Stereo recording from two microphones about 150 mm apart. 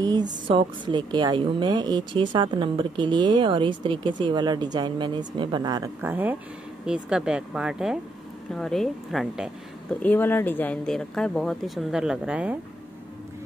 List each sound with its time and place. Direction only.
0.0 s a sound: 25° right (ahead or behind)
0.5 s a woman's voice: 35° right (ahead or behind)
5.9 s speech: 10° right (ahead or behind)
10.0 s speech: 15° left (ahead or behind); by 12.5 s 5° right (ahead or behind)